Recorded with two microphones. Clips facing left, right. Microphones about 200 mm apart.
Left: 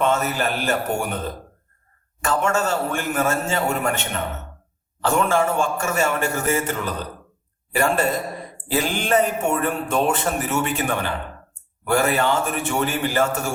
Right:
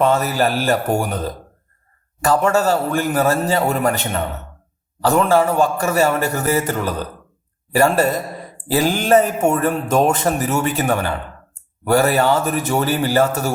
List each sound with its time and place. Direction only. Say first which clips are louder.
0.0 s a man's voice: right 5 dB; 35° right (ahead or behind)